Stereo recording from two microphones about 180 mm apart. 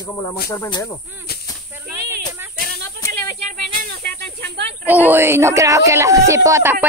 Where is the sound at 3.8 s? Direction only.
60° right (ahead or behind).